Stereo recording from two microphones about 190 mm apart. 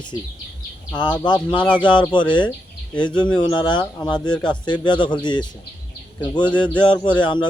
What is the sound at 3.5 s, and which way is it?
Speech, 25° left (ahead or behind).